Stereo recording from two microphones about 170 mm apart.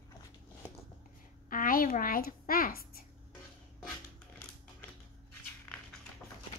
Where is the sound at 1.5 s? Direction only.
55° left (ahead or behind).